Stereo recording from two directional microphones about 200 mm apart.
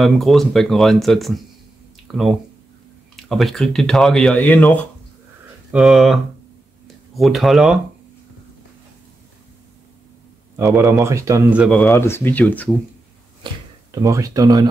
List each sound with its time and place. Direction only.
0.0 s speech: centre (ahead or behind)
7.2 s speech: centre (ahead or behind)
10.5 s a man's voice: 15° right (ahead or behind)
11.6 s speech: 5° left (ahead or behind)
13.9 s a man's voice: 15° right (ahead or behind)